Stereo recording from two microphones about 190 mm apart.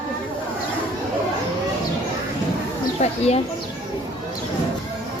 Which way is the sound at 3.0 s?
35° left (ahead or behind).